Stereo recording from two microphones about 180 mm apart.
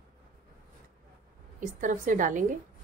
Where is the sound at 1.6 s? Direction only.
45° right (ahead or behind).